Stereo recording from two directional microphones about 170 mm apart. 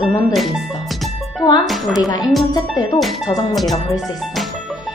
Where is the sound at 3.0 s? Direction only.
Centre (ahead or behind).